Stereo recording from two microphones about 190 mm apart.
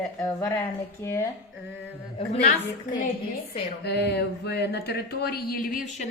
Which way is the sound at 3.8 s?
60° left (ahead or behind).